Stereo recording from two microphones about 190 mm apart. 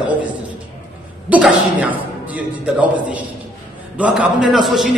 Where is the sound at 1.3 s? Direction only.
5° right (ahead or behind).